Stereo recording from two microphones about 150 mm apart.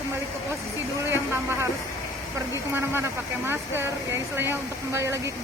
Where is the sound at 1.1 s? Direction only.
15° right (ahead or behind).